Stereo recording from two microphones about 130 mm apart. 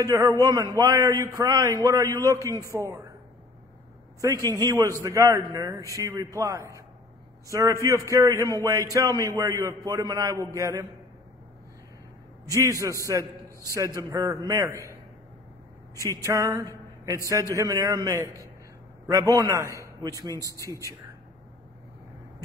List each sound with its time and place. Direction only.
0.0 s a man's voice: 25° right (ahead or behind)
4.2 s a man's voice: 25° right (ahead or behind)
12.5 s a man's voice: 25° right (ahead or behind)
16.0 s a man's voice: 25° right (ahead or behind)